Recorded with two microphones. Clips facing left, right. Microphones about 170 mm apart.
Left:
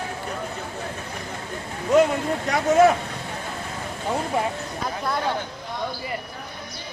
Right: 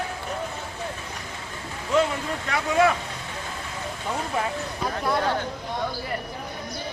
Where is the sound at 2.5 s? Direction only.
40° left (ahead or behind).